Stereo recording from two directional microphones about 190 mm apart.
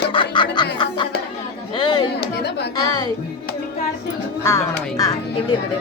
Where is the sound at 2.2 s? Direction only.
60° left (ahead or behind).